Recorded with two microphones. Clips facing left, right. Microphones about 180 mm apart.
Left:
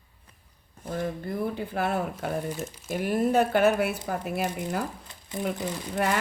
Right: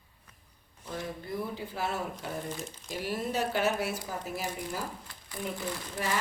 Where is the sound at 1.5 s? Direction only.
55° left (ahead or behind).